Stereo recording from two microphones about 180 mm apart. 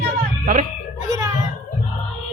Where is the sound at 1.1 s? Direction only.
20° right (ahead or behind).